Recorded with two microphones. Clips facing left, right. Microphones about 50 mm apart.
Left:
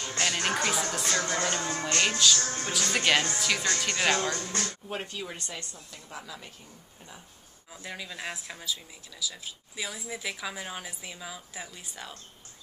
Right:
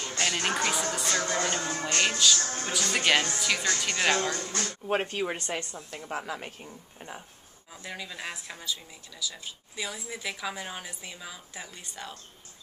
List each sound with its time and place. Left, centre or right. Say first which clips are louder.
0.2 s music: even; centre
2.0 s a woman's voice: even; centre
4.6 s speech: right 5 dB; right
7.7 s a woman's voice: even; centre